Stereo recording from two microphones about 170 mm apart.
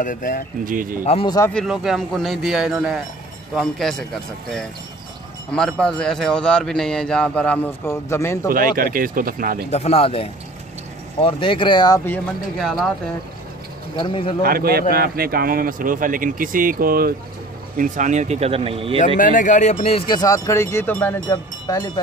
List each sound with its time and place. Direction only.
0.0 s speech: 55° left (ahead or behind)
0.7 s a man's voice: 55° right (ahead or behind)
1.0 s speech: 35° left (ahead or behind)
1.5 s a man's voice: centre (ahead or behind)
5.5 s a man's voice: 5° left (ahead or behind)
8.5 s a man's voice: 55° right (ahead or behind)
9.7 s speech: 40° left (ahead or behind)
12.5 s a man's voice: centre (ahead or behind)
13.9 s speech: 30° left (ahead or behind)
14.4 s a man's voice: 60° right (ahead or behind)
17.7 s speech: 50° right (ahead or behind); by 18.9 s 35° right (ahead or behind)
19.1 s speech: 50° left (ahead or behind); by 22.0 s 20° left (ahead or behind)